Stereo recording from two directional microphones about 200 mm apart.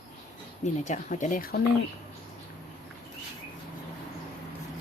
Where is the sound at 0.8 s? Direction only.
40° left (ahead or behind).